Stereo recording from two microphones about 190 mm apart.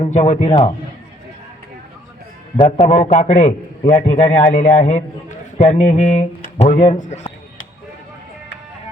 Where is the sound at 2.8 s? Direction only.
40° left (ahead or behind).